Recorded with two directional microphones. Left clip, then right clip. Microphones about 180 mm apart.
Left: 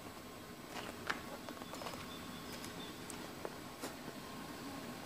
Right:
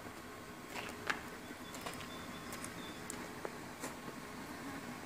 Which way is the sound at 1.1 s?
55° right (ahead or behind).